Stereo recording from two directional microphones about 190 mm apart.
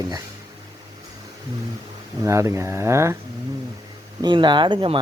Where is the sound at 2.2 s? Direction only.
15° right (ahead or behind).